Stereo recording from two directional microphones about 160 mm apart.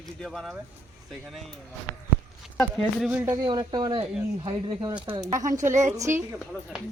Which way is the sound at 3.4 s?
25° right (ahead or behind).